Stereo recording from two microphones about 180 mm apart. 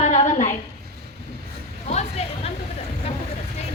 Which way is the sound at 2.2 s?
35° left (ahead or behind).